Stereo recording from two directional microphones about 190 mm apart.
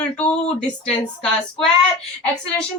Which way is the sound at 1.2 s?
5° left (ahead or behind).